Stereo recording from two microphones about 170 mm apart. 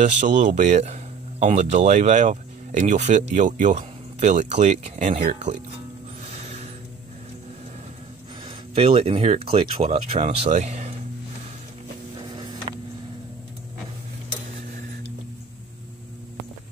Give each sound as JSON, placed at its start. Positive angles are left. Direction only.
{"t": 0.0, "sound": "speech", "side_deg": -45}
{"t": 6.2, "sound": "a sound", "side_deg": -40}
{"t": 8.5, "sound": "speech", "side_deg": -35}